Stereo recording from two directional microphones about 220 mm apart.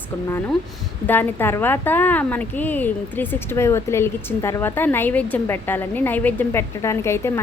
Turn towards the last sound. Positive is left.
turn(degrees=10)  # may be behind; listen again after turning